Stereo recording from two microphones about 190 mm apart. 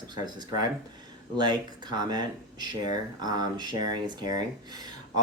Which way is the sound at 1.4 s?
20° right (ahead or behind).